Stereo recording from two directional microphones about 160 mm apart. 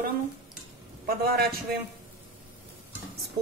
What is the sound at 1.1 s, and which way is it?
Speech, 70° right (ahead or behind).